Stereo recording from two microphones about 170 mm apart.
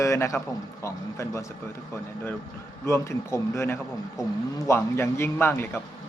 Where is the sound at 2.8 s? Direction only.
15° left (ahead or behind).